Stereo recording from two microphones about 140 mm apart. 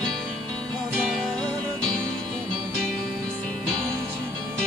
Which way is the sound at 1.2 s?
10° left (ahead or behind).